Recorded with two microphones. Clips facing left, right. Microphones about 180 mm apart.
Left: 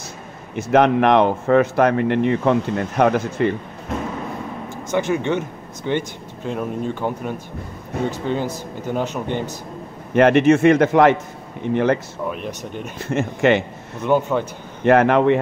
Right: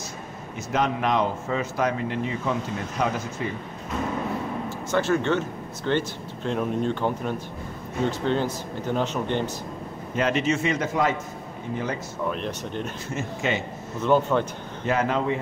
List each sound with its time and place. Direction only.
0.6 s speech: 65° left (ahead or behind)
4.9 s speech: 15° left (ahead or behind)
10.1 s speech: 60° left (ahead or behind)
12.3 s speech: 10° left (ahead or behind)
13.1 s speech: 65° left (ahead or behind)
14.0 s speech: 10° left (ahead or behind)
14.9 s speech: 65° left (ahead or behind)